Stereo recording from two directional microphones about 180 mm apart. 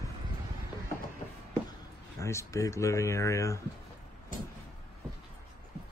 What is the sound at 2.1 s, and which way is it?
Speech, 15° left (ahead or behind).